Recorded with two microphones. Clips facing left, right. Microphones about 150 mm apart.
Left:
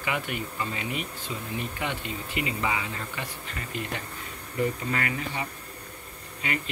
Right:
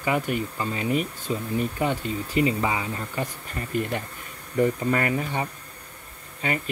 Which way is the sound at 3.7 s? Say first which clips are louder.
Right 8 dB; 50° right (ahead or behind).